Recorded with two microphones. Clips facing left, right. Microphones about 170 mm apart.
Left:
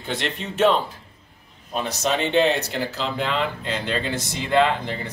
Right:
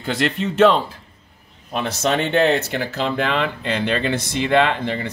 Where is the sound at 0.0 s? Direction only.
90° right.